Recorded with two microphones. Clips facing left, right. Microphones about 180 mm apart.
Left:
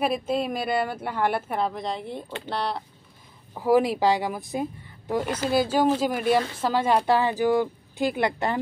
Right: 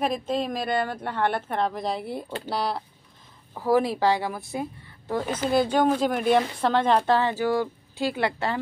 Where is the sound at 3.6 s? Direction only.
15° left (ahead or behind).